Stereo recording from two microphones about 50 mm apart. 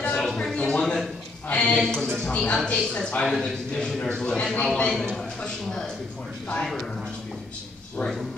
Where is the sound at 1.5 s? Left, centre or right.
Left.